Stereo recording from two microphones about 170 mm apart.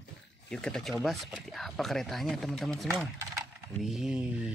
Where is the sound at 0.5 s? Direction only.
5° left (ahead or behind).